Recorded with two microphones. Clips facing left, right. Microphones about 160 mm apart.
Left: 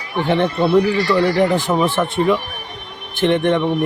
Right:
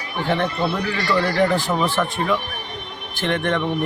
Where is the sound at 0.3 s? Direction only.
20° left (ahead or behind).